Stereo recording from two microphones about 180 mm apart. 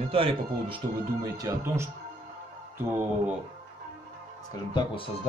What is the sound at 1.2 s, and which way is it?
Speech, 20° right (ahead or behind).